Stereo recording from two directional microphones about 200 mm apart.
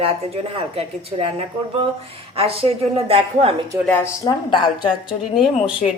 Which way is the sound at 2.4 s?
30° right (ahead or behind).